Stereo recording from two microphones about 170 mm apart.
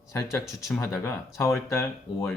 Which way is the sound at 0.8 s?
15° left (ahead or behind).